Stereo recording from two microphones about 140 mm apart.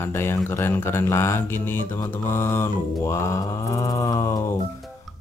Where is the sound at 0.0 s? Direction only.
15° left (ahead or behind).